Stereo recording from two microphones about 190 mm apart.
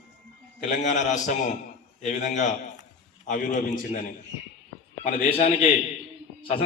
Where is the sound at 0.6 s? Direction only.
40° left (ahead or behind).